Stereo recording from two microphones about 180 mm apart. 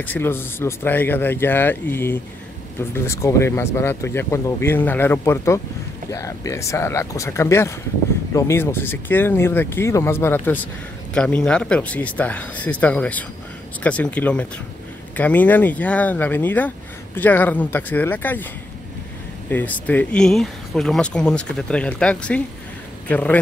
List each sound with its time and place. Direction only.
0.0 s speech: 10° left (ahead or behind)
19.5 s speech: 10° left (ahead or behind)